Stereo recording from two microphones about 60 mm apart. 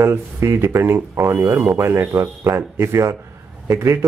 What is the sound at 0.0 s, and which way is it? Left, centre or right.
Speech, right.